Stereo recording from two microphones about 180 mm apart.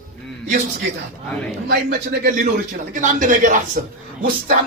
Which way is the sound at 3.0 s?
45° right (ahead or behind).